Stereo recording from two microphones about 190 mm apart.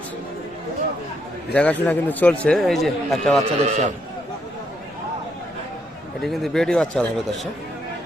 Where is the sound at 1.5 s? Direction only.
10° left (ahead or behind).